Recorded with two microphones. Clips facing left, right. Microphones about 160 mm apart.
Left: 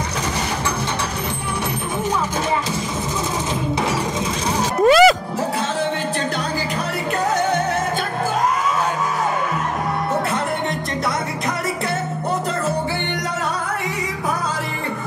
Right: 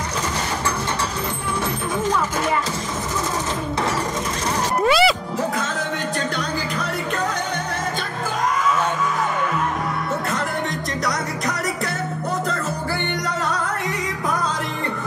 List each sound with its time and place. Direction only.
4.8 s music: 45° left (ahead or behind)